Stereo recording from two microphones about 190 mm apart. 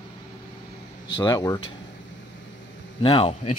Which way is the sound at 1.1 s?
20° left (ahead or behind).